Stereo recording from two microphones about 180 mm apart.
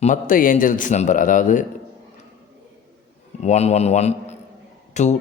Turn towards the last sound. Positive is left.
turn(degrees=40)  # may be behind; listen again after turning